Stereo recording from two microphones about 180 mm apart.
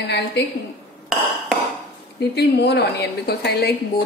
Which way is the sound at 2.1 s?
65° left (ahead or behind).